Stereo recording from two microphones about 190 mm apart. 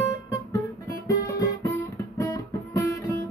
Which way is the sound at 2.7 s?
15° left (ahead or behind).